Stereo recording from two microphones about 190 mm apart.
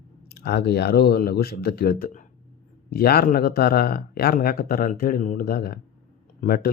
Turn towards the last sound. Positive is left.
turn(degrees=50)  # may be behind; listen again after turning